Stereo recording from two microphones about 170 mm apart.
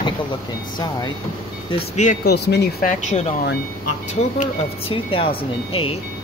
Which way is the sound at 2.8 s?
45° left (ahead or behind).